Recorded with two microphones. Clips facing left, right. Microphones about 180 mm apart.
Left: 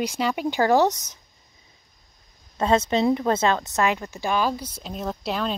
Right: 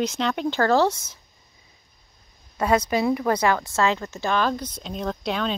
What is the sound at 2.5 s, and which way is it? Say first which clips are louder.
A woman's voice: left 1 dB; 25° left (ahead or behind).